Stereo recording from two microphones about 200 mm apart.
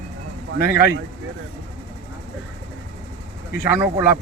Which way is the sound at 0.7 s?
10° right (ahead or behind).